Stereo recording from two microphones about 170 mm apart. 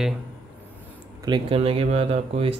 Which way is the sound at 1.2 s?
30° right (ahead or behind).